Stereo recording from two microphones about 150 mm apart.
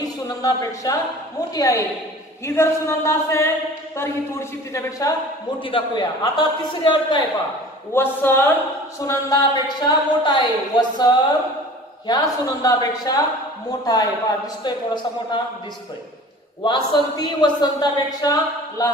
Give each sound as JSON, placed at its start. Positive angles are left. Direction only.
{"t": 0.0, "sound": "a man's voice", "side_deg": 25}
{"t": 5.6, "sound": "a man's voice", "side_deg": 35}
{"t": 7.9, "sound": "a man's voice", "side_deg": 15}
{"t": 12.1, "sound": "a man's voice", "side_deg": 25}
{"t": 16.6, "sound": "a man's voice", "side_deg": 30}